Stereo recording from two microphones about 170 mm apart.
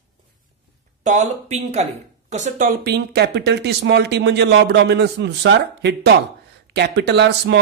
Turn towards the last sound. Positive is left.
turn(degrees=-90)